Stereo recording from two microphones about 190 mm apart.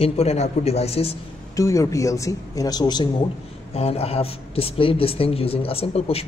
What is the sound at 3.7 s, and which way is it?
A man's voice, 30° left (ahead or behind).